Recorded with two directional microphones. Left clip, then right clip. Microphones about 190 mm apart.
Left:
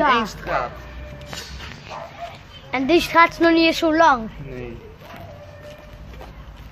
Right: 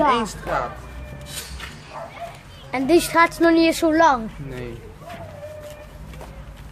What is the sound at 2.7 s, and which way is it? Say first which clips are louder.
Speech: even; centre (ahead or behind).